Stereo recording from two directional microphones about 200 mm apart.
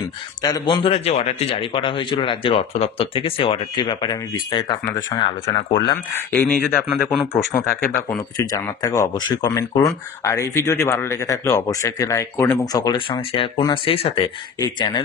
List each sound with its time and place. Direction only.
0.4 s speech: 20° left (ahead or behind)
6.1 s speech: 10° left (ahead or behind)